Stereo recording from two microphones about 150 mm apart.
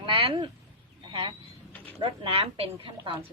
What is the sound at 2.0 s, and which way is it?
Speech, 40° right (ahead or behind).